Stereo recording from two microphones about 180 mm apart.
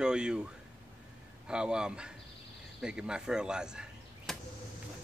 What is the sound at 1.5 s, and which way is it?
Speech, 5° right (ahead or behind).